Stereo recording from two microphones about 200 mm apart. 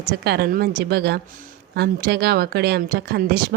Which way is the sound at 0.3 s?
50° right (ahead or behind).